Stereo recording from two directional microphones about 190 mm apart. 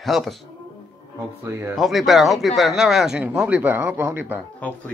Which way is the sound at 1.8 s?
Centre (ahead or behind).